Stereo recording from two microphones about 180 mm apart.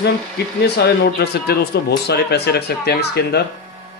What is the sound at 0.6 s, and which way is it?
Speech, 65° left (ahead or behind).